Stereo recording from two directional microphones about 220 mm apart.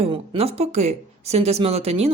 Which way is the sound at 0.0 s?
25° right (ahead or behind).